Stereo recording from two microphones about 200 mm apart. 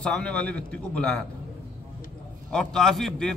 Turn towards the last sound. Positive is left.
turn(degrees=0)  # may be behind; listen again after turning